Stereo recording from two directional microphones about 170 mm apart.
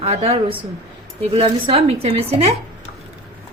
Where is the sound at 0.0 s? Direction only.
40° right (ahead or behind).